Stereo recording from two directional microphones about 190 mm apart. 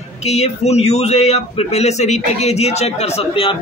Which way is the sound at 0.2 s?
35° left (ahead or behind).